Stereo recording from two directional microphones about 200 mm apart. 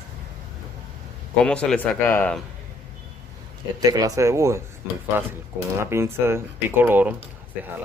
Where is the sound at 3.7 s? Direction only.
20° right (ahead or behind).